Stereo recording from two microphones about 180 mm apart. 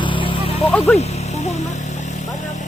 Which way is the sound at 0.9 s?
35° left (ahead or behind).